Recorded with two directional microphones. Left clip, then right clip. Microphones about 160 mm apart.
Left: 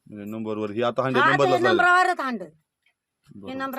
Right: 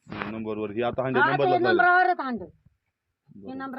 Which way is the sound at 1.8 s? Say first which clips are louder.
Left 1 dB; 15° left (ahead or behind).